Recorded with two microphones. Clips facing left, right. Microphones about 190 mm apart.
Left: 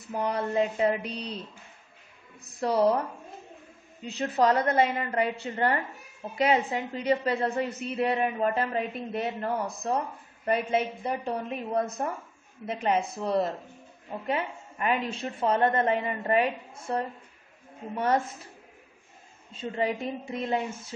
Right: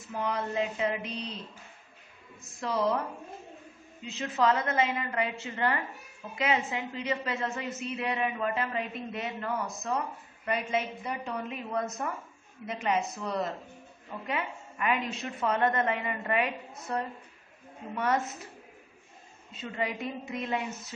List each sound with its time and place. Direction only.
0.1 s a woman's voice: 35° left (ahead or behind)
2.6 s a woman's voice: 35° left (ahead or behind)
4.0 s a woman's voice: 35° left (ahead or behind)
13.0 s a woman's voice: 30° left (ahead or behind)
19.5 s a woman's voice: 30° left (ahead or behind)